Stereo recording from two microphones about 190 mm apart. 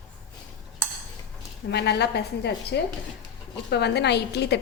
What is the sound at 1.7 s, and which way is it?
A woman's voice, 60° left (ahead or behind).